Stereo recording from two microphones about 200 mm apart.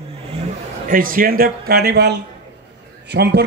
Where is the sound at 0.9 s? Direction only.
45° right (ahead or behind).